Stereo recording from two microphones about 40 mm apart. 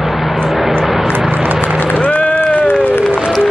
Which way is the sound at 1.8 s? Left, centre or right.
Left.